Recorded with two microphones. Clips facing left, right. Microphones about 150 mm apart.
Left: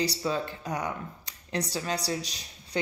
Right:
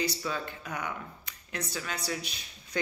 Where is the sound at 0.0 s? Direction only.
35° left (ahead or behind).